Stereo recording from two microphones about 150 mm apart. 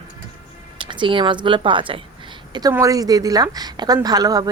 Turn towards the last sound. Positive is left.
turn(degrees=-25)  # may be behind; listen again after turning